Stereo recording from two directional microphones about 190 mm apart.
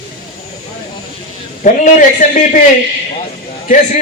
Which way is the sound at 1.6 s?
45° left (ahead or behind).